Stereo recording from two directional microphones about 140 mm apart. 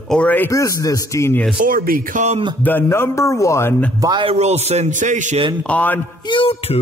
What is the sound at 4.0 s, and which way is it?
Speech, 30° right (ahead or behind).